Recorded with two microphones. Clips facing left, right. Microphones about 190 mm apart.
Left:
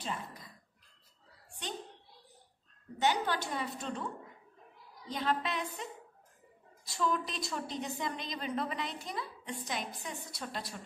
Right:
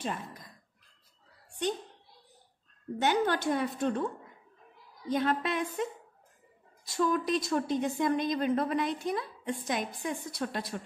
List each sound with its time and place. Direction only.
0.0 s speech: 50° right (ahead or behind)
3.0 s a woman's voice: 50° right (ahead or behind)
5.0 s a woman's voice: 50° right (ahead or behind)
7.0 s a woman's voice: 50° right (ahead or behind)